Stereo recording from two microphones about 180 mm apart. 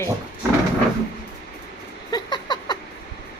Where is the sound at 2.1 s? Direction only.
25° left (ahead or behind).